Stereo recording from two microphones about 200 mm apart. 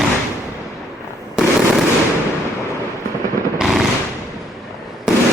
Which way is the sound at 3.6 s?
Centre (ahead or behind).